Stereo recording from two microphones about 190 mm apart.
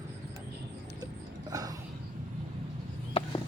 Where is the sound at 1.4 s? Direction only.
20° right (ahead or behind).